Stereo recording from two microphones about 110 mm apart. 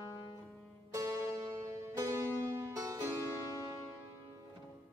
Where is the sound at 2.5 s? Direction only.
30° right (ahead or behind).